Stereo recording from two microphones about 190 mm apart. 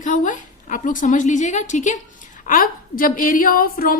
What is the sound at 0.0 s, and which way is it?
A woman's voice, 45° left (ahead or behind).